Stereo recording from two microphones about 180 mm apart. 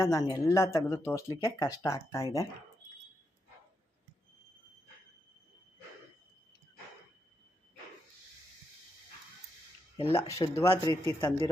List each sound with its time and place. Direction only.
0.0 s speech: 20° left (ahead or behind)
10.2 s speech: 15° left (ahead or behind)